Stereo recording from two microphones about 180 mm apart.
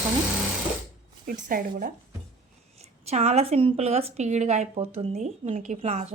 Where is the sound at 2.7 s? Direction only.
35° right (ahead or behind).